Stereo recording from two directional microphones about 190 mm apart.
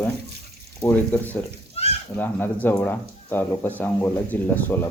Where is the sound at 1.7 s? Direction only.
30° left (ahead or behind).